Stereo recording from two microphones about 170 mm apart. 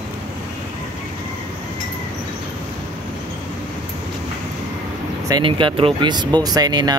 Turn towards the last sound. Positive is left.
turn(degrees=-25)  # may be behind; listen again after turning